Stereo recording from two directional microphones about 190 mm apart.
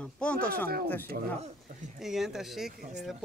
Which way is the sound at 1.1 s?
60° right (ahead or behind).